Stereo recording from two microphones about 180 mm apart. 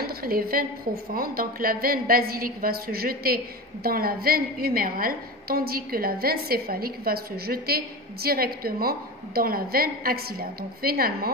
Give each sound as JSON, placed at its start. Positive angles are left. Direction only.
{"t": 0.0, "sound": "a woman's voice", "side_deg": -55}